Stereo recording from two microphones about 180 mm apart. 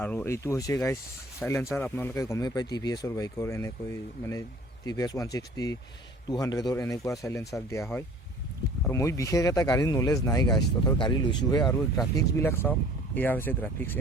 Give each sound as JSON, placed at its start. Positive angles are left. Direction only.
{"t": 0.0, "sound": "speech", "side_deg": 10}
{"t": 4.9, "sound": "speech", "side_deg": 20}